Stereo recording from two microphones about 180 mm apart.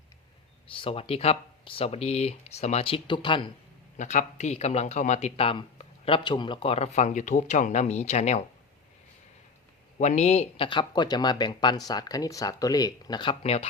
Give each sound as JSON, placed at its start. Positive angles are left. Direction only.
{"t": 0.7, "sound": "speech", "side_deg": 30}
{"t": 3.9, "sound": "speech", "side_deg": 45}
{"t": 10.0, "sound": "speech", "side_deg": 40}